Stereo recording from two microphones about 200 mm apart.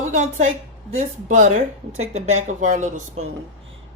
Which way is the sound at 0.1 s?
35° right (ahead or behind).